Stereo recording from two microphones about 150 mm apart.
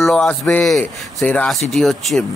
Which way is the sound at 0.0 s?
5° left (ahead or behind).